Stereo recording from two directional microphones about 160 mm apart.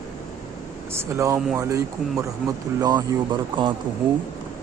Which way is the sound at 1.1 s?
15° right (ahead or behind).